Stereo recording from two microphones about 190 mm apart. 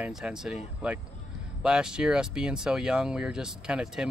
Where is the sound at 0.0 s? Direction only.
5° right (ahead or behind).